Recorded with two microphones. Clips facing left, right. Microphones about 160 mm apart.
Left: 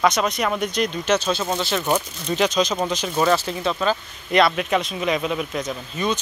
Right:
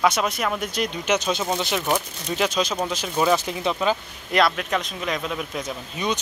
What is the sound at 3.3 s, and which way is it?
Speech, 15° right (ahead or behind).